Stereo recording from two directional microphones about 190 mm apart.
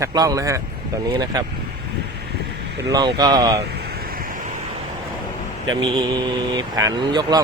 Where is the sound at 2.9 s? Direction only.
20° right (ahead or behind).